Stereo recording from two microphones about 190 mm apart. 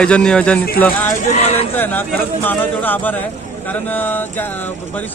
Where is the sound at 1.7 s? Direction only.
10° left (ahead or behind).